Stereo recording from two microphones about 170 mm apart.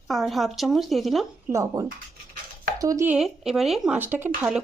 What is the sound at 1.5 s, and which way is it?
Speech, 15° right (ahead or behind).